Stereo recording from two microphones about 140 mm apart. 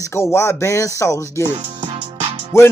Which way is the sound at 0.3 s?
20° left (ahead or behind).